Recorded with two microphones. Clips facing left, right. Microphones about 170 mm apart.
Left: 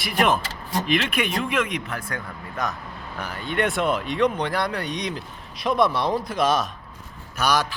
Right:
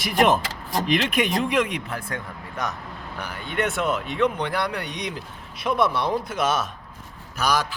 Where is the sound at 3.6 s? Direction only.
Centre (ahead or behind).